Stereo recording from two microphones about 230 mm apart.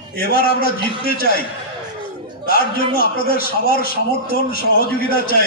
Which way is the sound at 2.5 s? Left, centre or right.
Left.